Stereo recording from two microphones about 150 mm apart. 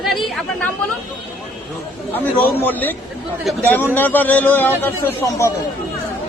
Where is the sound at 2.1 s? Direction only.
10° left (ahead or behind).